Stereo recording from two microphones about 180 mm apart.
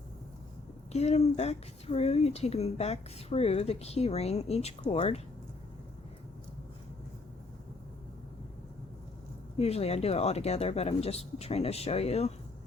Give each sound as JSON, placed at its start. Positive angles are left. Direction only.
{"t": 0.9, "sound": "speech", "side_deg": 35}
{"t": 9.6, "sound": "speech", "side_deg": 35}